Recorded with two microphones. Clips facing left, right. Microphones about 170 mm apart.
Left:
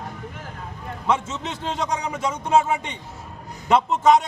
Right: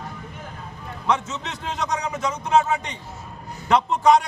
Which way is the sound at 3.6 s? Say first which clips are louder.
Even; centre (ahead or behind).